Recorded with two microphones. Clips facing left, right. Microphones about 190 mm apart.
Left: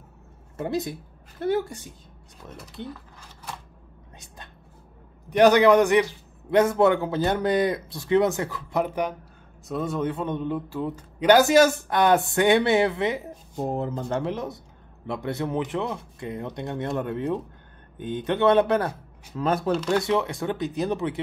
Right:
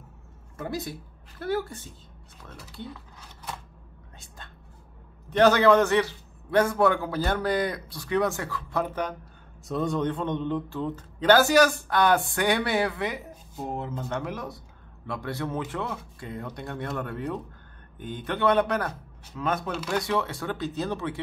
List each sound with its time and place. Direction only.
0.6 s a man's voice: 20° left (ahead or behind)
2.9 s mechanisms: 5° right (ahead or behind)
5.3 s a man's voice: 15° left (ahead or behind)
9.7 s a man's voice: 5° left (ahead or behind); by 13.2 s 25° left (ahead or behind)
13.6 s a man's voice: 40° left (ahead or behind)
20.0 s a man's voice: 20° left (ahead or behind)